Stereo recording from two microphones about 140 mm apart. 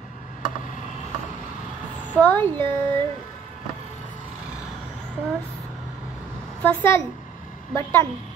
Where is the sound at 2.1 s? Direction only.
10° left (ahead or behind).